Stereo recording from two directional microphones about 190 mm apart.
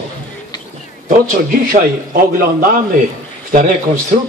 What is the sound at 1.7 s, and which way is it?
A man's voice, 50° right (ahead or behind).